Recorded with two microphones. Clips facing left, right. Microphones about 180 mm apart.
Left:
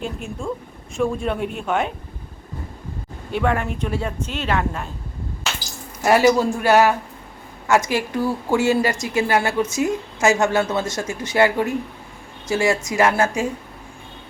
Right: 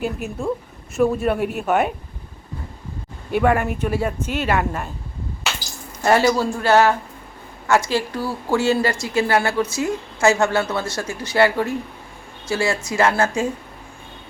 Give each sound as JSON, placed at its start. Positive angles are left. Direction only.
{"t": 0.0, "sound": "speech", "side_deg": -5}
{"t": 3.3, "sound": "speech", "side_deg": -5}
{"t": 6.0, "sound": "speech", "side_deg": 10}
{"t": 8.2, "sound": "speech", "side_deg": -10}
{"t": 8.5, "sound": "a woman's voice", "side_deg": 15}